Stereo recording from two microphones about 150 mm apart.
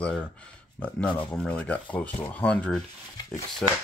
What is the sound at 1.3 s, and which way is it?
Speech, 10° left (ahead or behind).